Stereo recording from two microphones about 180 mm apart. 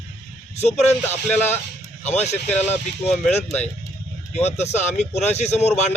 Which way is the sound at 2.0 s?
40° left (ahead or behind).